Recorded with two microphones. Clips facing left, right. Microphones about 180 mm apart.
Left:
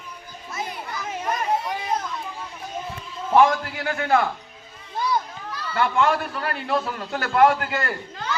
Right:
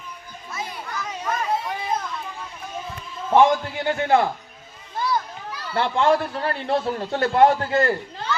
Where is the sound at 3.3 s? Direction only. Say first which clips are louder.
Right 1 dB; 25° right (ahead or behind).